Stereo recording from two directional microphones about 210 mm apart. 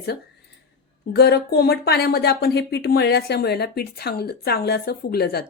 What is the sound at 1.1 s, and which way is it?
Speech, 50° left (ahead or behind).